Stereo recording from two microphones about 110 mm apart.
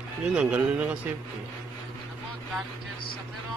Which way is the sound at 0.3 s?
10° right (ahead or behind).